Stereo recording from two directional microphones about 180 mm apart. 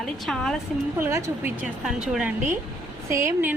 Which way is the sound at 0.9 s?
15° right (ahead or behind).